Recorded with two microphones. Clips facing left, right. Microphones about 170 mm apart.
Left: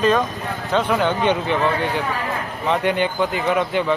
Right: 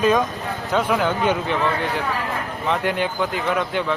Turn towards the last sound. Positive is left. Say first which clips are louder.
# left 3 dB
turn(degrees=0)  # may be behind; listen again after turning